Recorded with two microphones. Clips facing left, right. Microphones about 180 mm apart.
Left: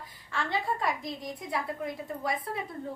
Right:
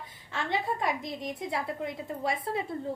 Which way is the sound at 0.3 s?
25° right (ahead or behind).